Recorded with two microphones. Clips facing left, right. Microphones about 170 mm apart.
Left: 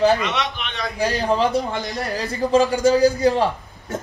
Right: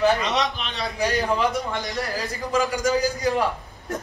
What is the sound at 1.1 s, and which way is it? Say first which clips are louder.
A man's voice: left 3 dB; 35° left (ahead or behind).